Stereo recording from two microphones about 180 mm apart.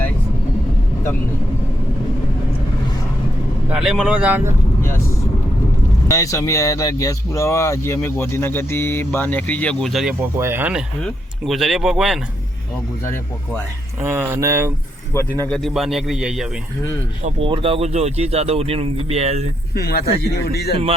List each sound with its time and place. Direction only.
3.7 s speech: 5° right (ahead or behind)
6.1 s speech: 20° left (ahead or behind); by 10.2 s centre (ahead or behind)
10.2 s speech: 15° right (ahead or behind)
14.0 s speech: 10° right (ahead or behind)
15.4 s speech: 5° left (ahead or behind)
17.2 s speech: 30° right (ahead or behind)
19.7 s speech: 60° left (ahead or behind)